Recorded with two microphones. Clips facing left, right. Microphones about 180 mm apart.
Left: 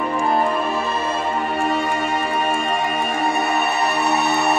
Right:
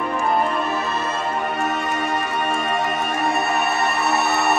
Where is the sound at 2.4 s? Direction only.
Centre (ahead or behind).